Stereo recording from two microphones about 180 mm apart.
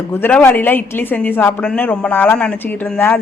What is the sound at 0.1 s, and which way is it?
Speech, 10° left (ahead or behind).